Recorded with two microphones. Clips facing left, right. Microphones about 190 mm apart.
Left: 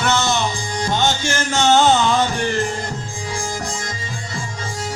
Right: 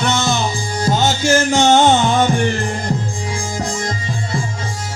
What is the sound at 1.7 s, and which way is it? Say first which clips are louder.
Music: even; 20° right (ahead or behind).